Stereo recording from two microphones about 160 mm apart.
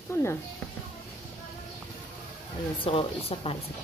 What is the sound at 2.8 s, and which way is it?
Speech, 35° left (ahead or behind).